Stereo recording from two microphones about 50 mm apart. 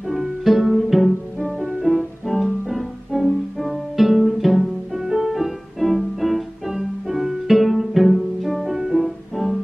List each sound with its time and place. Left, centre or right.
0.1 s music: centre